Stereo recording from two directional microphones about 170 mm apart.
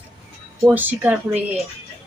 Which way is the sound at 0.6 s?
10° right (ahead or behind).